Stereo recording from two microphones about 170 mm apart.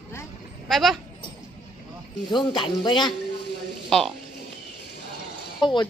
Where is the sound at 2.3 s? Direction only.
30° left (ahead or behind).